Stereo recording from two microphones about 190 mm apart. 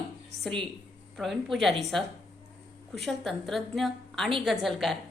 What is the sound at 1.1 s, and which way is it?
A woman's voice, centre (ahead or behind).